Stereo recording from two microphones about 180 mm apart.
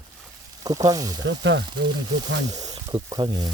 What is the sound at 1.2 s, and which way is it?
Speech, 90° right.